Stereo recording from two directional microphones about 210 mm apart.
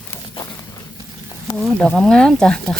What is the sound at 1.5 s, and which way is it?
Speech, 5° left (ahead or behind).